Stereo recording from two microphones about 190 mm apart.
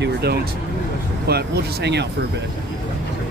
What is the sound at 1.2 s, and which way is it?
Speech, 60° right (ahead or behind).